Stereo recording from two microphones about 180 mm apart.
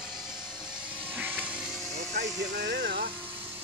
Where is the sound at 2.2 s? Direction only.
65° right (ahead or behind).